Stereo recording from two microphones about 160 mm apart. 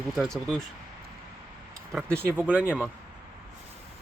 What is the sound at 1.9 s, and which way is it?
Speech, centre (ahead or behind).